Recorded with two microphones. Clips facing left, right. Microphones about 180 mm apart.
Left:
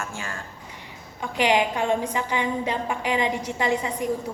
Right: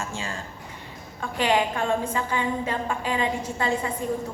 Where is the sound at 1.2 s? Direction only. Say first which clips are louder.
Left 1 dB; 15° left (ahead or behind).